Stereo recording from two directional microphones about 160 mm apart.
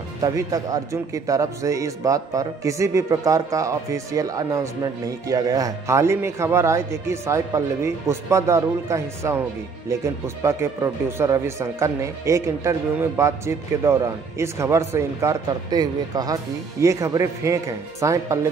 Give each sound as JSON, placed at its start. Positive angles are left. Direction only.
{"t": 0.2, "sound": "speech", "side_deg": -20}